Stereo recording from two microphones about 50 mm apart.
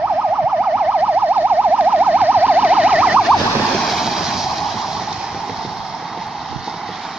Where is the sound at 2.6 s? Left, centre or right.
Right.